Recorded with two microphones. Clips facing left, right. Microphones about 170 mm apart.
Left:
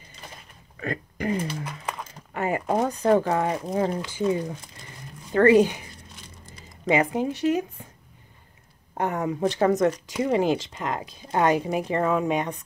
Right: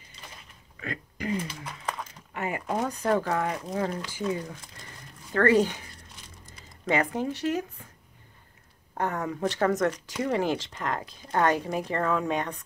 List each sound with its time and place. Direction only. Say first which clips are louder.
0.7 s speech: left 6 dB; 45° left (ahead or behind)
2.3 s mechanisms: left 6 dB; 40° left (ahead or behind)
3.0 s speech: left 5 dB; 25° left (ahead or behind)
6.9 s speech: left 4 dB; 15° left (ahead or behind)
8.9 s speech: left 4 dB; 20° left (ahead or behind)